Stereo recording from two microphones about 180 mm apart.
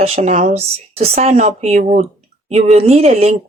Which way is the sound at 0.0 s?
35° right (ahead or behind).